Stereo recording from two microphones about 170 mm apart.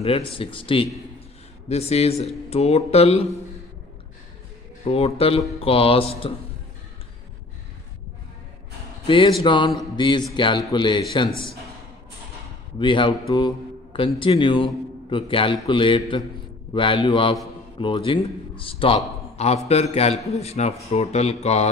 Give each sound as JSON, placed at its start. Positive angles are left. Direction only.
{"t": 0.0, "sound": "speech", "side_deg": 30}
{"t": 4.8, "sound": "speech", "side_deg": 35}
{"t": 9.0, "sound": "a man's voice", "side_deg": 30}
{"t": 12.7, "sound": "a man's voice", "side_deg": 30}